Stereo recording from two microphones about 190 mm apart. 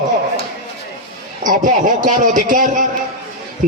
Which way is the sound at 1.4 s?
45° right (ahead or behind).